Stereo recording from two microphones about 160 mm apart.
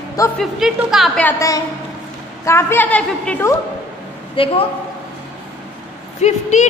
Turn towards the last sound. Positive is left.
turn(degrees=45)  # may be behind; listen again after turning